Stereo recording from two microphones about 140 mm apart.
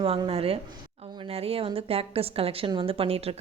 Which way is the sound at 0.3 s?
45° right (ahead or behind).